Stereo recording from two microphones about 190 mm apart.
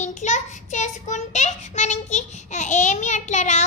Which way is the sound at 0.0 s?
40° left (ahead or behind).